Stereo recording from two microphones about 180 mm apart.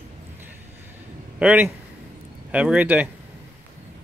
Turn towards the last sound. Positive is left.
turn(degrees=-10)  # may be behind; listen again after turning